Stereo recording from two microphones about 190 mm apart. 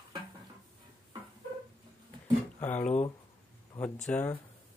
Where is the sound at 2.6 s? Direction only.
10° left (ahead or behind).